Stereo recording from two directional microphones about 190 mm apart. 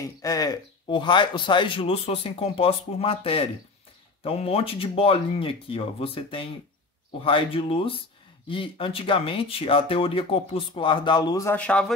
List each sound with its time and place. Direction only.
0.2 s speech: 20° left (ahead or behind)